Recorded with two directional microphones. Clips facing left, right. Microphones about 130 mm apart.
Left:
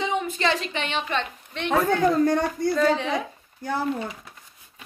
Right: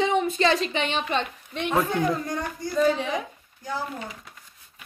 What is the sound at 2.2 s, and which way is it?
Speech, 75° left (ahead or behind).